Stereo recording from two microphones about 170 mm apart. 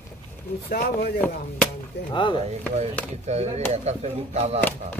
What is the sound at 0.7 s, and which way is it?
Speech, 65° left (ahead or behind).